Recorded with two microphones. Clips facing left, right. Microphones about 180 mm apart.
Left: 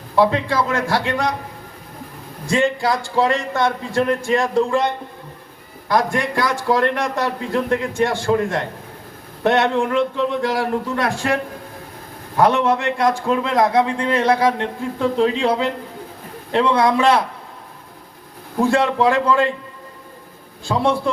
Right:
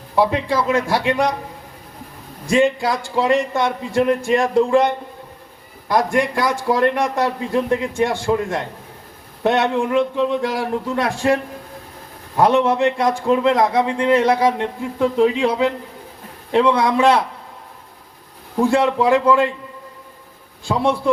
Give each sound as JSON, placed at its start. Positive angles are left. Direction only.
{"t": 0.2, "sound": "a man's voice", "side_deg": -10}
{"t": 2.5, "sound": "a man's voice", "side_deg": -15}
{"t": 5.9, "sound": "a man's voice", "side_deg": -15}
{"t": 12.4, "sound": "a man's voice", "side_deg": -25}
{"t": 18.7, "sound": "a man's voice", "side_deg": -20}
{"t": 20.7, "sound": "a man's voice", "side_deg": -15}